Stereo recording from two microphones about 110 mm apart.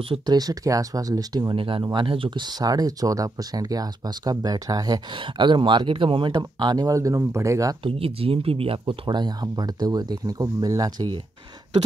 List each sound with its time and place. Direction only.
0.3 s speech: 35° right (ahead or behind)
1.5 s speech: 50° right (ahead or behind)
6.3 s speech: 35° right (ahead or behind)
7.8 s speech: 60° right (ahead or behind); by 11.1 s 40° right (ahead or behind)